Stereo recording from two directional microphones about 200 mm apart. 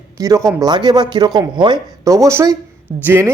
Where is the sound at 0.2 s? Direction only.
15° right (ahead or behind).